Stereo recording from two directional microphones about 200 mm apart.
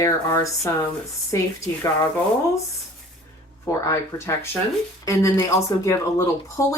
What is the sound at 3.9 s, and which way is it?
Speech, 15° left (ahead or behind).